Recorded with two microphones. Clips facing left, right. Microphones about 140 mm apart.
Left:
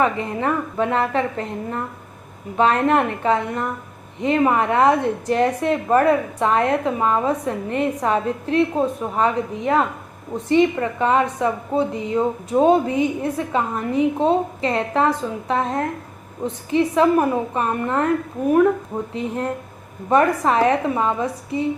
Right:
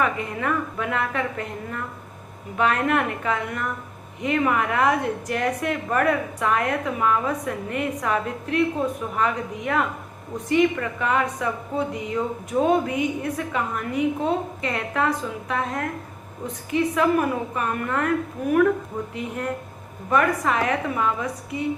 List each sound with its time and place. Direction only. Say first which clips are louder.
0.0 s a woman's voice: left 4 dB; 30° left (ahead or behind)